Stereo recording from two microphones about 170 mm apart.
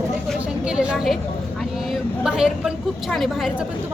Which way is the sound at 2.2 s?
5° right (ahead or behind).